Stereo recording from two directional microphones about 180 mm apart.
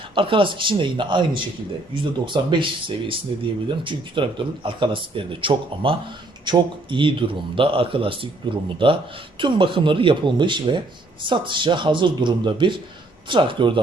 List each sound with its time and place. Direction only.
0.1 s speech: 30° right (ahead or behind)